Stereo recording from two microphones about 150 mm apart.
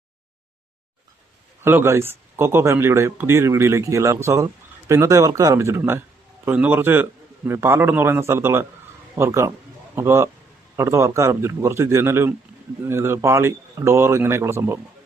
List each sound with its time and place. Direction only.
1.6 s speech: 15° right (ahead or behind)